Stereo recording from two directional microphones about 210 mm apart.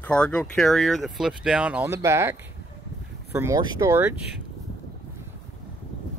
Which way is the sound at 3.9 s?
10° right (ahead or behind).